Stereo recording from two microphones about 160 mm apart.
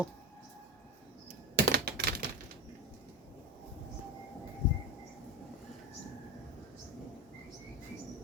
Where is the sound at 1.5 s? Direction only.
80° right.